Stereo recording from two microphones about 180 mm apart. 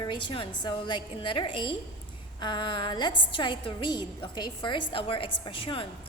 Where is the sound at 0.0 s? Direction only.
25° left (ahead or behind).